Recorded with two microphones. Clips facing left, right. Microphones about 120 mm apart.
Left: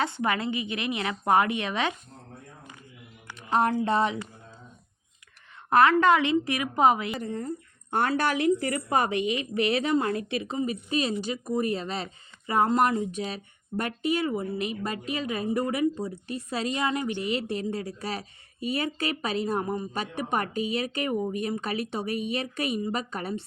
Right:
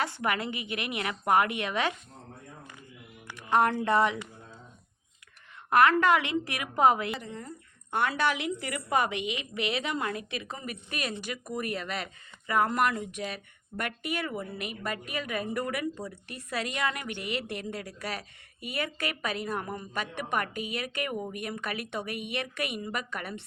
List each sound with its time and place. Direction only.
0.0 s speech: 25° left (ahead or behind)
3.3 s speech: 25° left (ahead or behind)
5.7 s speech: 25° left (ahead or behind)
7.2 s speech: 45° left (ahead or behind)